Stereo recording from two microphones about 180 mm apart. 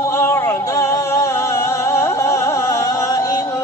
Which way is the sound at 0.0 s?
15° left (ahead or behind).